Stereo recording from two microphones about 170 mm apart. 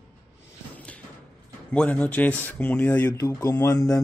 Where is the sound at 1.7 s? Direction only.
5° left (ahead or behind).